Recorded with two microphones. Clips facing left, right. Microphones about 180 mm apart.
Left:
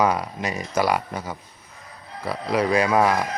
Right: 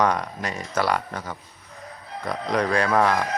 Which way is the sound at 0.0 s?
10° left (ahead or behind).